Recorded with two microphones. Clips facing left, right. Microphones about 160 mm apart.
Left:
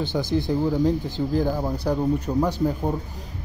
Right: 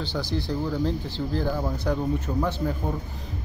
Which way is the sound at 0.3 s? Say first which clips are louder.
Left 7 dB; 50° left (ahead or behind).